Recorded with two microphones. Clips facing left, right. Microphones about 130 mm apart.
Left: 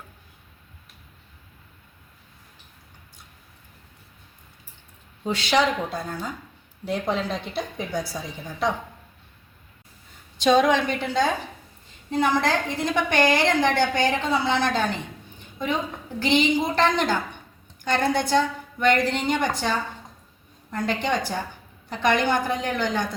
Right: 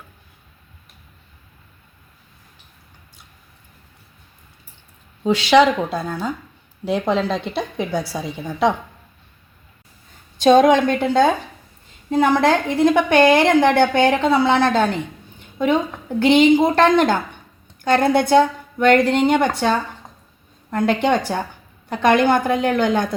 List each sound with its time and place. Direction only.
5.2 s speech: 90° right; by 6.3 s 70° right (ahead or behind)
6.8 s a woman's voice: 85° right
10.3 s a woman's voice: 50° right (ahead or behind)